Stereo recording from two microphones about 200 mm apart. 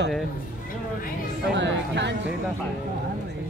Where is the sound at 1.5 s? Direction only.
65° right (ahead or behind).